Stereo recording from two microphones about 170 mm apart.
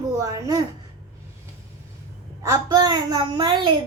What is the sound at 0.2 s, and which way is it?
Speech, 20° right (ahead or behind).